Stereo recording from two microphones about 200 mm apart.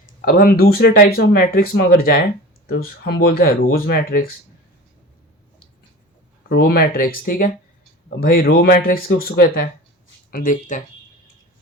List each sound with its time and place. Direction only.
0.3 s speech: 45° left (ahead or behind)
6.5 s speech: 50° left (ahead or behind)